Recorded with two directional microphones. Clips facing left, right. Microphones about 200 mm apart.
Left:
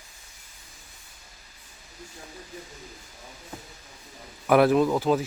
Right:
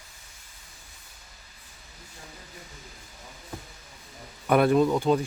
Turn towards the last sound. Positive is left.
turn(degrees=5)  # may be behind; listen again after turning